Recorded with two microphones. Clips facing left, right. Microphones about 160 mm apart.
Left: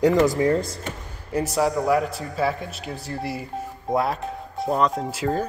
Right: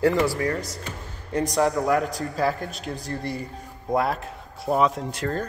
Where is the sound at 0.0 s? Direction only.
15° left (ahead or behind).